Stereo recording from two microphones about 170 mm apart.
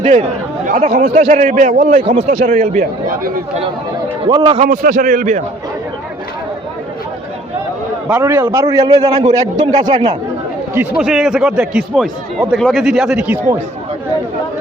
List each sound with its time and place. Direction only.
0.0 s speech: 40° right (ahead or behind)
4.3 s a man's voice: 30° right (ahead or behind)
4.7 s speech: 55° right (ahead or behind)
8.0 s a man's voice: 10° right (ahead or behind); by 10.2 s 30° right (ahead or behind)
10.9 s speech: 5° right (ahead or behind)